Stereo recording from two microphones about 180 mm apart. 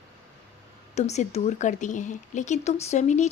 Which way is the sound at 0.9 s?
40° left (ahead or behind).